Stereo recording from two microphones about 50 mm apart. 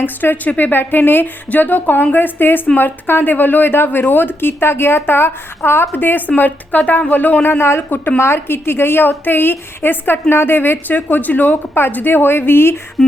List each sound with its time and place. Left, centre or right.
0.0 s speech: left
7.4 s speech: left
7.9 s speech: left
8.2 s speech: left